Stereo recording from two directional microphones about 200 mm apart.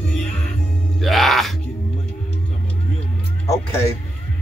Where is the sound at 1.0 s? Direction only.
Centre (ahead or behind).